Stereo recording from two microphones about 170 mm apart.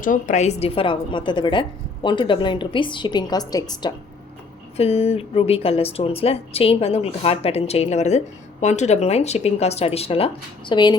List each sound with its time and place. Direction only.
0.0 s a woman's voice: 50° left (ahead or behind); by 3.9 s 25° left (ahead or behind)
4.8 s a woman's voice: 35° left (ahead or behind)